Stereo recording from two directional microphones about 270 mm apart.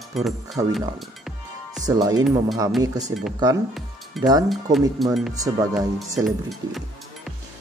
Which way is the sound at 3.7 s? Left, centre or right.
Centre.